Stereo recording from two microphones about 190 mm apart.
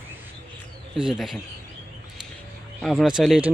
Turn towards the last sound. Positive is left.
turn(degrees=-5)  # may be behind; listen again after turning